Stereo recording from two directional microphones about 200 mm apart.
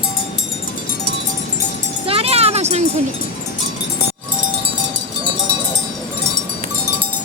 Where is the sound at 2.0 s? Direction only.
30° right (ahead or behind).